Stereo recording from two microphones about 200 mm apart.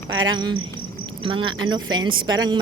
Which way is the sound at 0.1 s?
80° right.